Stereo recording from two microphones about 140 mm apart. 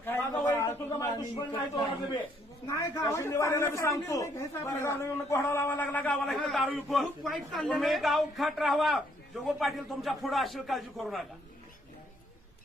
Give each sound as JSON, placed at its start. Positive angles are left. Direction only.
{"t": 0.0, "sound": "a sound", "side_deg": 15}
{"t": 1.7, "sound": "a man's voice", "side_deg": 35}
{"t": 2.6, "sound": "a man's voice", "side_deg": 20}
{"t": 6.3, "sound": "a man's voice", "side_deg": 0}